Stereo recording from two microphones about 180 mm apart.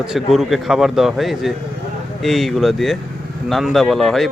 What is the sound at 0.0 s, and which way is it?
A man's voice, centre (ahead or behind).